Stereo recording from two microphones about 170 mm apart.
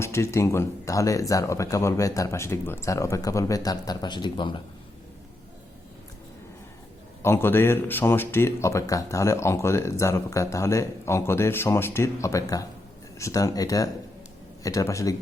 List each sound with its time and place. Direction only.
0.0 s speech: 15° left (ahead or behind)
7.2 s speech: 15° left (ahead or behind)